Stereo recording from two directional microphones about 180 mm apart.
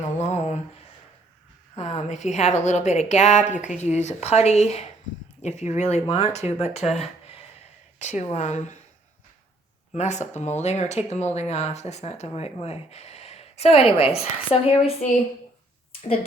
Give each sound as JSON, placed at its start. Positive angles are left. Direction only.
{"t": 0.2, "sound": "a sound", "side_deg": 40}
{"t": 1.7, "sound": "speech", "side_deg": 40}
{"t": 7.9, "sound": "speech", "side_deg": 40}
{"t": 9.9, "sound": "speech", "side_deg": 40}